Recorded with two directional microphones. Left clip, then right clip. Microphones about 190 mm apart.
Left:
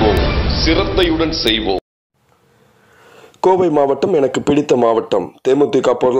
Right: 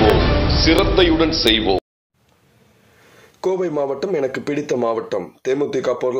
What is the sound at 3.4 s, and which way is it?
A man's voice, 35° left (ahead or behind).